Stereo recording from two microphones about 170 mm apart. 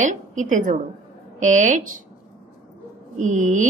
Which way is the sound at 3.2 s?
50° right (ahead or behind).